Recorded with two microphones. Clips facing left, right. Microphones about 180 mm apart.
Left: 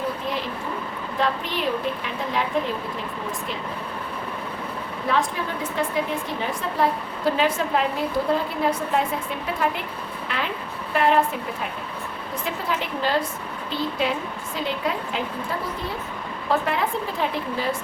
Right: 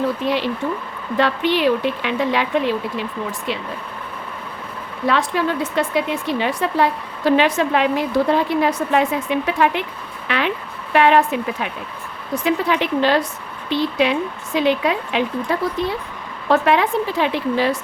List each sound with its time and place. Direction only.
0.3 s a woman's voice: 85° right
5.0 s a woman's voice: 80° right